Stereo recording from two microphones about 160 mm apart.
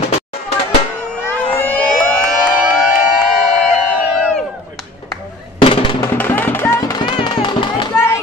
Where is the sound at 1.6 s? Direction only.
5° left (ahead or behind).